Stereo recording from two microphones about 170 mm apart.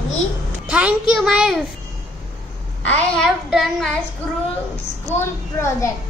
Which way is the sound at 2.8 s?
10° left (ahead or behind).